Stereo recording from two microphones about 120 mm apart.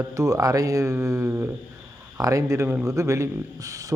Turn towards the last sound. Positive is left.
turn(degrees=-30)  # may be behind; listen again after turning